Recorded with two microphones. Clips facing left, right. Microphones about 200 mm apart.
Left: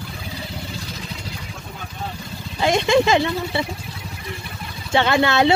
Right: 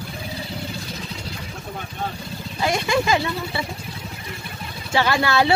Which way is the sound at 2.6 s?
25° left (ahead or behind).